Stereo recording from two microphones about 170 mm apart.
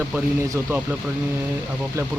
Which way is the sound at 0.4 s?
20° right (ahead or behind).